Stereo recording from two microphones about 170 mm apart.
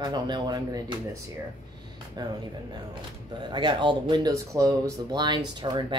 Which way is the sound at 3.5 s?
30° right (ahead or behind).